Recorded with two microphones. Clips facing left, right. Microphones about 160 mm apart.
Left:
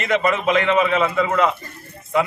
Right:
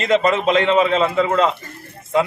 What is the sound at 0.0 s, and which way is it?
A man's voice, 25° right (ahead or behind).